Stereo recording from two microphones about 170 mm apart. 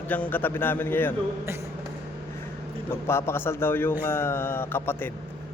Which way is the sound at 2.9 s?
15° left (ahead or behind).